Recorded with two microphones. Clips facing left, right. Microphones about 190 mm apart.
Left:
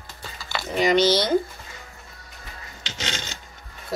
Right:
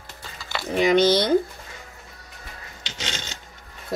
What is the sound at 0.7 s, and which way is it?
Speech, 55° right (ahead or behind).